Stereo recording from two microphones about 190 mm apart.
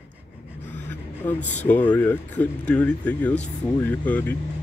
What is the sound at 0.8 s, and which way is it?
Speech, 10° left (ahead or behind).